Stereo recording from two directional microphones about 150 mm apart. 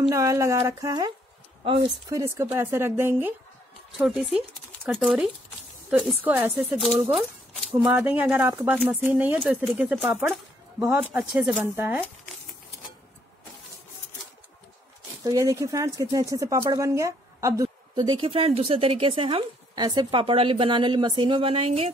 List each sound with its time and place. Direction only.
0.1 s speech: 20° right (ahead or behind)
4.0 s speech: centre (ahead or behind)
15.2 s speech: 20° right (ahead or behind); by 21.9 s 40° right (ahead or behind)